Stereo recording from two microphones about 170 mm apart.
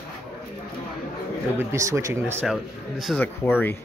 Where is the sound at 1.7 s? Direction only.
20° right (ahead or behind).